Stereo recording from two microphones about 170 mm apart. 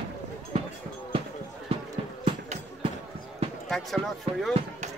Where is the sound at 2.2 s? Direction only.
35° right (ahead or behind).